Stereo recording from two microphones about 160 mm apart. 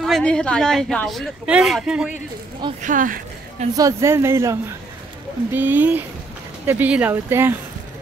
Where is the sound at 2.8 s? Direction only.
55° right (ahead or behind).